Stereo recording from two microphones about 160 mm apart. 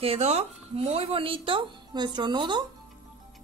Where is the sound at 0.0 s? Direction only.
40° right (ahead or behind).